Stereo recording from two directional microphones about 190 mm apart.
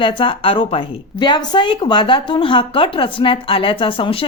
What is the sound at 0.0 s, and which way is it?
A woman's voice, 25° left (ahead or behind).